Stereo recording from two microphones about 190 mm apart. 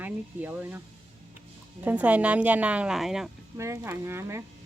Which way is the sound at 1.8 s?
10° right (ahead or behind).